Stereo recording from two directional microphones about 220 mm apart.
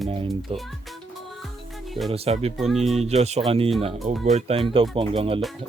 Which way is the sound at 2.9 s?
30° right (ahead or behind).